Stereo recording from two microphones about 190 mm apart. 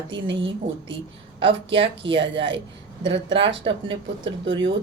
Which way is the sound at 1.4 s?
30° right (ahead or behind).